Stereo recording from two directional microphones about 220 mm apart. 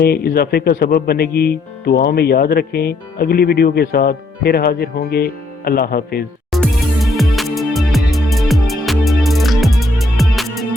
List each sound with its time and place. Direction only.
0.0 s speech: 45° left (ahead or behind)
6.5 s music: centre (ahead or behind)